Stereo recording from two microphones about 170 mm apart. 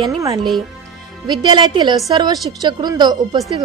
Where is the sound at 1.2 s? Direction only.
25° right (ahead or behind).